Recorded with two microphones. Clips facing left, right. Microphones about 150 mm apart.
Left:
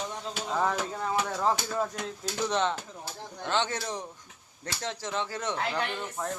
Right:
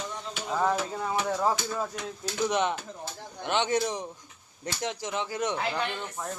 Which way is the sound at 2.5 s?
15° right (ahead or behind).